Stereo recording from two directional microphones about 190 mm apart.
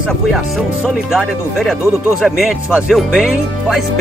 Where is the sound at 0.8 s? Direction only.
Centre (ahead or behind).